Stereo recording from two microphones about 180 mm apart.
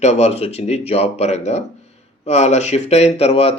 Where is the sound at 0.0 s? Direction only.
40° left (ahead or behind).